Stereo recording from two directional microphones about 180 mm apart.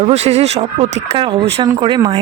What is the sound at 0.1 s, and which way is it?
Speech, 35° right (ahead or behind).